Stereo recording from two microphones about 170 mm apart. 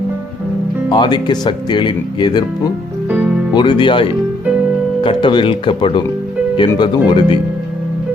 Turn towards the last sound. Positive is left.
turn(degrees=25)  # may be behind; listen again after turning